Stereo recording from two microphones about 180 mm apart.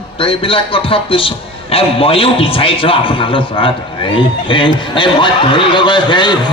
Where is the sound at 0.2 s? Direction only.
30° left (ahead or behind).